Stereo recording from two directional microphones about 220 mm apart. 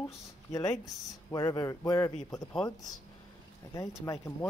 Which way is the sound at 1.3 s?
15° left (ahead or behind).